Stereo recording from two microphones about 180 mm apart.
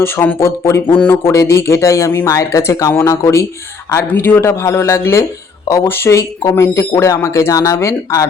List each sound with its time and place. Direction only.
0.0 s speech: 15° left (ahead or behind)